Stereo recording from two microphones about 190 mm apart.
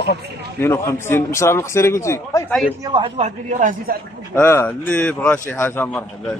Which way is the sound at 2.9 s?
30° right (ahead or behind).